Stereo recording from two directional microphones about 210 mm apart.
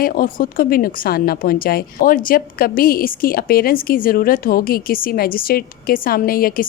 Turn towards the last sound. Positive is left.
turn(degrees=45)  # may be behind; listen again after turning